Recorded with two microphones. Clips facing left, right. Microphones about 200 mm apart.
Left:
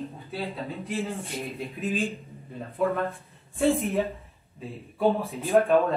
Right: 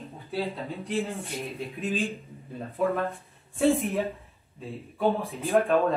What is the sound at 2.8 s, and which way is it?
Speech, centre (ahead or behind).